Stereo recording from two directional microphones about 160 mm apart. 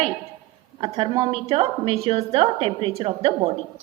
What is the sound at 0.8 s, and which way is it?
A woman's voice, 30° right (ahead or behind).